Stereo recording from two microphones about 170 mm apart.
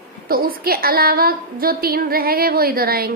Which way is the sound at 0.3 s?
60° right (ahead or behind).